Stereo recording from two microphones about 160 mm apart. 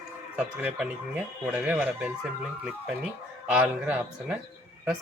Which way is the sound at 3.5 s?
10° right (ahead or behind).